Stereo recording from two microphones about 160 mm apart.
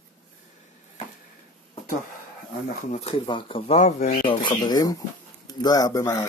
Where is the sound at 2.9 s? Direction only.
40° left (ahead or behind).